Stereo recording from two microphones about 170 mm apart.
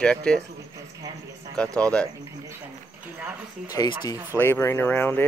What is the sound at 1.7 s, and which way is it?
Speech, 5° left (ahead or behind).